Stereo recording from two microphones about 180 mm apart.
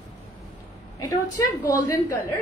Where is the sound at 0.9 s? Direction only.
20° left (ahead or behind).